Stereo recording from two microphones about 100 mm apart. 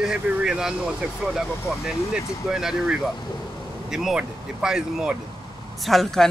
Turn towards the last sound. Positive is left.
turn(degrees=5)  # may be behind; listen again after turning